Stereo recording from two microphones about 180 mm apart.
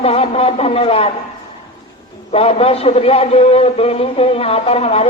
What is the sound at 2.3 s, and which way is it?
A man's voice, 35° left (ahead or behind).